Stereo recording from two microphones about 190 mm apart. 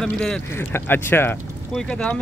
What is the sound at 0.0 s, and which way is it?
Speech, 5° left (ahead or behind).